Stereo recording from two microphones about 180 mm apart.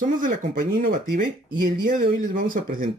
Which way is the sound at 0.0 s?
50° right (ahead or behind).